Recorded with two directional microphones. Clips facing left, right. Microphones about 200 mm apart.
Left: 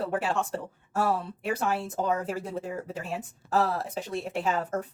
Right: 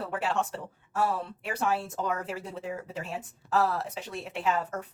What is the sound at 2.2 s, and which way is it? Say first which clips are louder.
Speech: left 4 dB; 50° left (ahead or behind).